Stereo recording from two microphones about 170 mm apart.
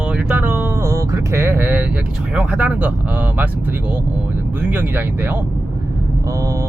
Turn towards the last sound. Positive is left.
turn(degrees=-20)  # may be behind; listen again after turning